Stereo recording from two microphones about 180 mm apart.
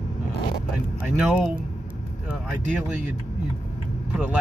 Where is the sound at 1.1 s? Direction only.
5° right (ahead or behind).